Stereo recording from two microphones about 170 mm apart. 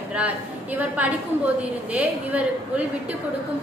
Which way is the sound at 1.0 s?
10° right (ahead or behind).